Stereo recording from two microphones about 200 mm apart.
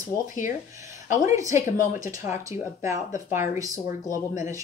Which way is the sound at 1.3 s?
15° right (ahead or behind).